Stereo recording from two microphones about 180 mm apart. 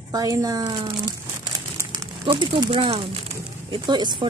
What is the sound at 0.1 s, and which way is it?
Speech, 20° right (ahead or behind).